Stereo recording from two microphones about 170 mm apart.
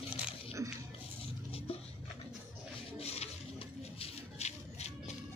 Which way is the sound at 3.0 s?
35° left (ahead or behind).